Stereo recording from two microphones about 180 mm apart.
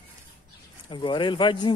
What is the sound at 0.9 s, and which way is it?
Speech, 25° left (ahead or behind).